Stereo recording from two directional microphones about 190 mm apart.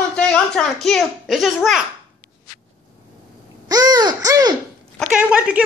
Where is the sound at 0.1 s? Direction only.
5° left (ahead or behind).